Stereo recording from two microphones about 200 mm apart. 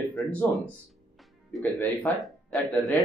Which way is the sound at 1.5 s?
Centre (ahead or behind).